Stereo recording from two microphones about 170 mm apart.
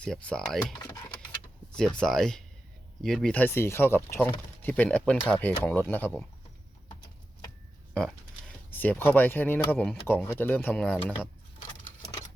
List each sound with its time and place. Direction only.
0.0 s speech: 5° left (ahead or behind)
0.6 s speech: 20° left (ahead or behind)
2.0 s speech: 5° left (ahead or behind)
8.7 s speech: 10° left (ahead or behind)